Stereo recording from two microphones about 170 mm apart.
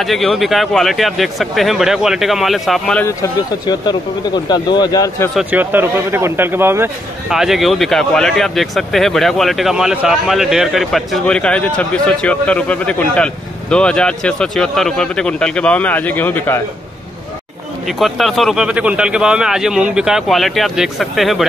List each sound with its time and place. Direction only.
0.0 s speech: centre (ahead or behind)
3.1 s speech: 20° left (ahead or behind)
5.3 s speech: 5° right (ahead or behind)
7.2 s speech: centre (ahead or behind)
17.8 s speech: centre (ahead or behind)